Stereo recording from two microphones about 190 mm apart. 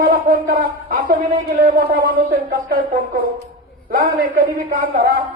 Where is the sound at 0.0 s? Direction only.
45° right (ahead or behind).